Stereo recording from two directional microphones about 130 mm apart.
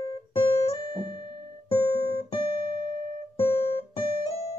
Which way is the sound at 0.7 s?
35° left (ahead or behind).